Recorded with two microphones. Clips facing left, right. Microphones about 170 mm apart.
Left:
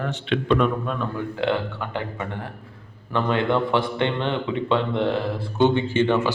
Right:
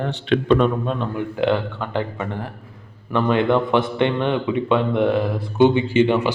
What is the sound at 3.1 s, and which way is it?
A man's voice, 20° right (ahead or behind).